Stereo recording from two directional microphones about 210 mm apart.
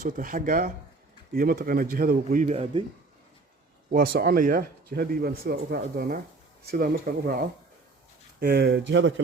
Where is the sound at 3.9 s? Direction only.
45° right (ahead or behind).